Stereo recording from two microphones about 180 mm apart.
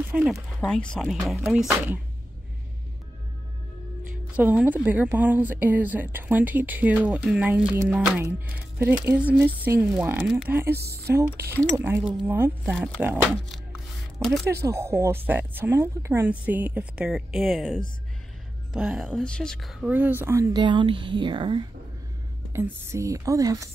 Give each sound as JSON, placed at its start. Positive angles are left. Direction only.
{"t": 0.1, "sound": "speech", "side_deg": -10}
{"t": 0.6, "sound": "speech", "side_deg": 5}
{"t": 4.3, "sound": "a woman's voice", "side_deg": -10}
{"t": 10.7, "sound": "speech", "side_deg": -65}
{"t": 11.7, "sound": "a woman's voice", "side_deg": -15}
{"t": 12.7, "sound": "speech", "side_deg": 0}
{"t": 14.7, "sound": "a woman's voice", "side_deg": -15}
{"t": 22.5, "sound": "a woman's voice", "side_deg": -15}